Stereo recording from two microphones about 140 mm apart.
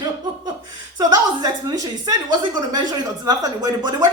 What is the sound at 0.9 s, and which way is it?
A woman's voice, 30° right (ahead or behind).